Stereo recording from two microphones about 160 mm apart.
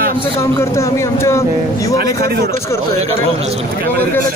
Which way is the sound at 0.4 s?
15° left (ahead or behind).